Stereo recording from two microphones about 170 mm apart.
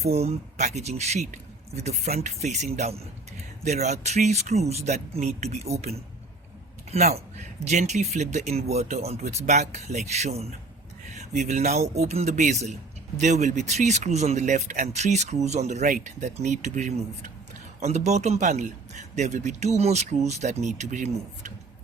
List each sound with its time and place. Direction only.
0.0 s speech: 40° right (ahead or behind)
11.1 s a sound: 45° right (ahead or behind)
11.9 s speech: 40° right (ahead or behind)